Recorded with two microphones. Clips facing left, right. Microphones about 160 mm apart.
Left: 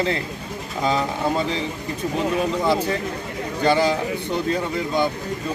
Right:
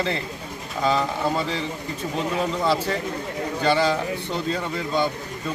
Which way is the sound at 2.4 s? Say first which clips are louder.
Even; 15° left (ahead or behind).